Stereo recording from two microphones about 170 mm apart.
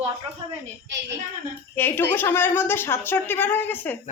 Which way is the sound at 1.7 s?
10° left (ahead or behind).